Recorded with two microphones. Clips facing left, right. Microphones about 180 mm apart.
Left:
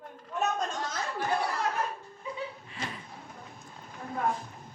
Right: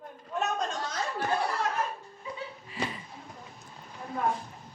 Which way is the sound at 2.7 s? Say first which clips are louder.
Right 4 dB; 5° right (ahead or behind).